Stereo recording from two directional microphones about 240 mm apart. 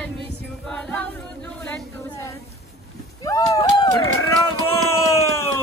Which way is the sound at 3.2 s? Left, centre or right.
Centre.